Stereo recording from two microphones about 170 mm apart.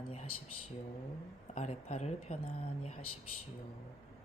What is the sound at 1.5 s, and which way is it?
Speech, 40° left (ahead or behind).